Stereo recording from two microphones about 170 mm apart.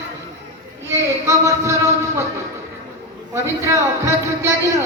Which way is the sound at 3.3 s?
15° right (ahead or behind).